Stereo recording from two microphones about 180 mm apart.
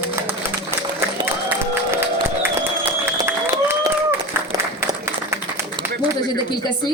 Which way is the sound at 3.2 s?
15° right (ahead or behind).